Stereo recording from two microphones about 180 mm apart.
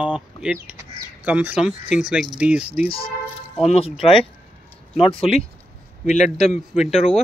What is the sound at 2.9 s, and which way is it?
Speech, 30° left (ahead or behind).